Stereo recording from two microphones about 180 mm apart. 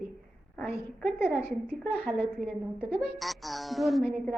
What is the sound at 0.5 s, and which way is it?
Speech, 5° left (ahead or behind).